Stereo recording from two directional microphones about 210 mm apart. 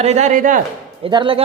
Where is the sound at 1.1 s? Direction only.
25° right (ahead or behind).